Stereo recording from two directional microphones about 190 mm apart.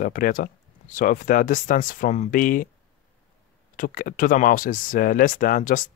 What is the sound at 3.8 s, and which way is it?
Speech, 45° left (ahead or behind).